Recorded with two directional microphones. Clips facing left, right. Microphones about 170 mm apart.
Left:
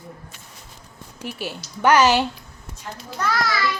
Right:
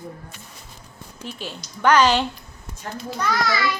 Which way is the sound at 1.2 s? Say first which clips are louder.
Left 3 dB; 10° left (ahead or behind).